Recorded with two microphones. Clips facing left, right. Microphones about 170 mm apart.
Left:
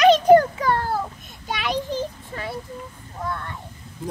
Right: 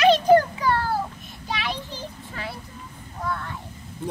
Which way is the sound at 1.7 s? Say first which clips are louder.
Left 9 dB; 45° left (ahead or behind).